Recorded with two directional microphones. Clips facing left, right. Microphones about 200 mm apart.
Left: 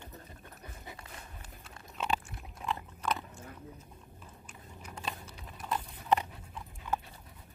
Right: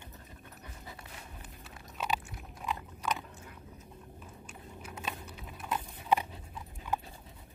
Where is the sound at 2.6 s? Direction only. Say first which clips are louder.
Left 1 dB; centre (ahead or behind).